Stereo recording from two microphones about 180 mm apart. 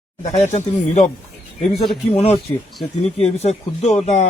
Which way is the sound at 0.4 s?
40° left (ahead or behind).